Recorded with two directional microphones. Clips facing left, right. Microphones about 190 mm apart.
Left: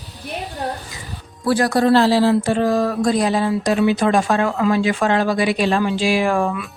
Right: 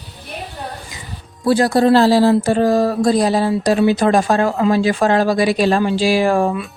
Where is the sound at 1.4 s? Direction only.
25° right (ahead or behind).